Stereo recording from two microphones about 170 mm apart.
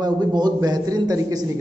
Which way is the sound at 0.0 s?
25° right (ahead or behind).